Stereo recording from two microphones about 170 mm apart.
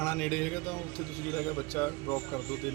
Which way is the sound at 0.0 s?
10° left (ahead or behind).